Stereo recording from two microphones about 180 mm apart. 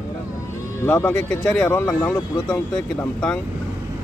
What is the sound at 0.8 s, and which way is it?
Speech, 10° left (ahead or behind).